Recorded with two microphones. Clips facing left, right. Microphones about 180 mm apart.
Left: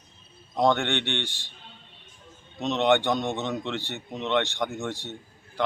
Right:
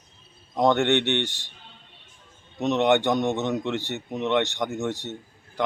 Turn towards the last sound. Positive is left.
turn(degrees=-20)  # may be behind; listen again after turning